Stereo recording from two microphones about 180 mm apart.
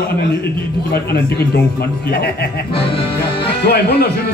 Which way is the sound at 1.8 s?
60° left (ahead or behind).